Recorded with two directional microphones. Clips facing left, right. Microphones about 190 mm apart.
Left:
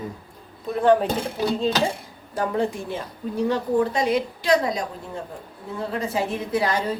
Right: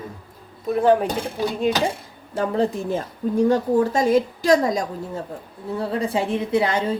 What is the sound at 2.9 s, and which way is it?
A woman's voice, 45° right (ahead or behind).